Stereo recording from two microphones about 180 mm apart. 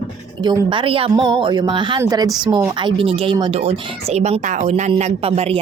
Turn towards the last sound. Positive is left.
turn(degrees=-30)  # may be behind; listen again after turning